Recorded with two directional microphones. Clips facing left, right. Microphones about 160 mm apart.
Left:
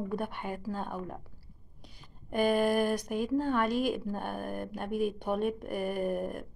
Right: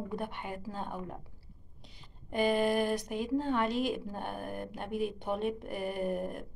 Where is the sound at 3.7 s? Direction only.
50° left (ahead or behind).